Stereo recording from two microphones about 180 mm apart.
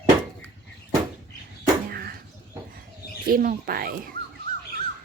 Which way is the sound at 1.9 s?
60° right (ahead or behind).